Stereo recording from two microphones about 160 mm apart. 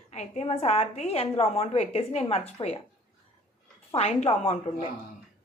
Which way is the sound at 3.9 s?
40° left (ahead or behind).